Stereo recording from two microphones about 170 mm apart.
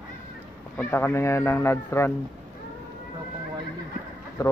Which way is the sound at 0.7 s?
10° left (ahead or behind).